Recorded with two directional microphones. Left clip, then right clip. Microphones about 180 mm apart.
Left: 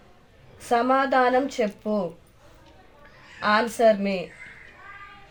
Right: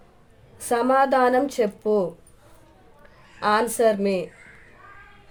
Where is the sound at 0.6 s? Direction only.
90° right.